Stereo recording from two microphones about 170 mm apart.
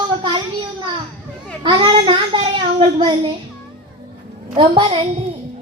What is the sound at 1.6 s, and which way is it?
A child's voice, 30° right (ahead or behind).